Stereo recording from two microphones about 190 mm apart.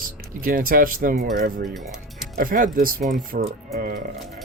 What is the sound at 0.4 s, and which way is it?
Speech, 50° right (ahead or behind).